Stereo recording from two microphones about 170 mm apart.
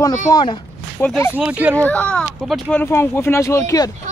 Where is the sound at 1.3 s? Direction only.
10° right (ahead or behind).